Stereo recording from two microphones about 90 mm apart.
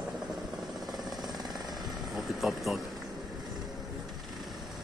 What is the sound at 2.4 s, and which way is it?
Speech, centre (ahead or behind).